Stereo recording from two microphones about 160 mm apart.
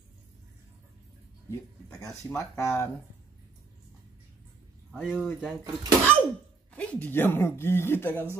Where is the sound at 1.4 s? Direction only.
20° left (ahead or behind).